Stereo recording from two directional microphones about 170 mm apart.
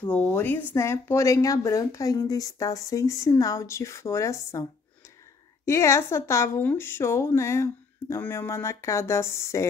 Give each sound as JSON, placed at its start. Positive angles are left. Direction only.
{"t": 0.0, "sound": "a woman's voice", "side_deg": 10}
{"t": 5.7, "sound": "a woman's voice", "side_deg": 15}